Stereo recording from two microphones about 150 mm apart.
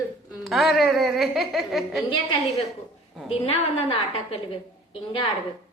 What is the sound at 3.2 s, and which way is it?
A woman's voice, 40° left (ahead or behind).